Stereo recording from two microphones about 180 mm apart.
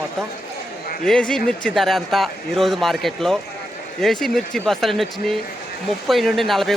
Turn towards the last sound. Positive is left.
turn(degrees=0)  # may be behind; listen again after turning